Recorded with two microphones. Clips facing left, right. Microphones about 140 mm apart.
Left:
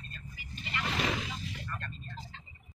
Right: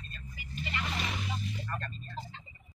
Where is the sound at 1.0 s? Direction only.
90° left.